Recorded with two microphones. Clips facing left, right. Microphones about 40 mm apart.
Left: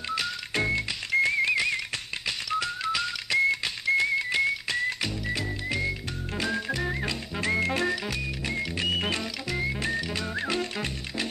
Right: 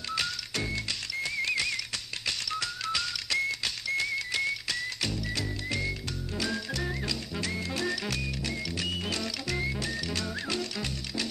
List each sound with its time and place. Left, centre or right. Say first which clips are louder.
0.6 s music: left 7 dB; left
1.4 s whistle: left 5 dB; left
5.0 s music: left 2 dB; left
7.5 s music: left 8 dB; left
7.9 s music: left 2 dB; centre
8.5 s music: left 8 dB; left
9.2 s music: left 2 dB; centre